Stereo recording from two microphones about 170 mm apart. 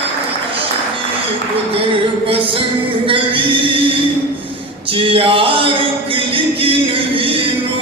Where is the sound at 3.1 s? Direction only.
30° right (ahead or behind).